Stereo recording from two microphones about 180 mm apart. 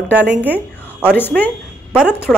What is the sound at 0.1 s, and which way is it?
Speech, 10° right (ahead or behind).